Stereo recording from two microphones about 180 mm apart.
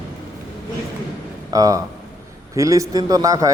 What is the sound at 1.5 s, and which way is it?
A man's voice, 20° right (ahead or behind).